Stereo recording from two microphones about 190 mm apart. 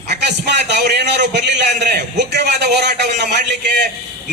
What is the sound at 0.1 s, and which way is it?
A man's voice, 60° right (ahead or behind).